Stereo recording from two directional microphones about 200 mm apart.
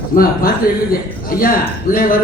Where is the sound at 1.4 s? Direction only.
45° left (ahead or behind).